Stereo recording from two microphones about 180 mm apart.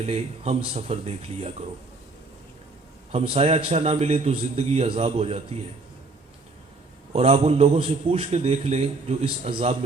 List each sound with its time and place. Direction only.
0.0 s a man's voice: 35° right (ahead or behind)
3.1 s a man's voice: 35° right (ahead or behind)
7.1 s a man's voice: 35° right (ahead or behind)